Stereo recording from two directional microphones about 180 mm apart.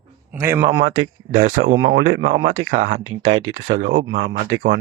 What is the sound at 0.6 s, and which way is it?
Speech, 30° right (ahead or behind).